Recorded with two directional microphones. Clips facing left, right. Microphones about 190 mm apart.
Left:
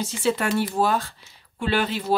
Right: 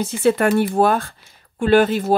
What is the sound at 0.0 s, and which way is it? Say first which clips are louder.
Speech: right 7 dB; 55° right (ahead or behind).